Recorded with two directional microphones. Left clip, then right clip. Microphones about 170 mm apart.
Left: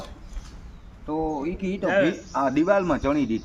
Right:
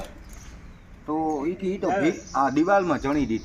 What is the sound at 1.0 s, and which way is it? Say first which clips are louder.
A man's voice: right 1 dB; 15° left (ahead or behind).